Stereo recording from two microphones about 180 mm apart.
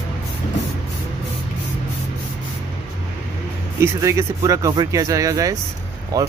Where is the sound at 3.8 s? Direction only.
15° right (ahead or behind).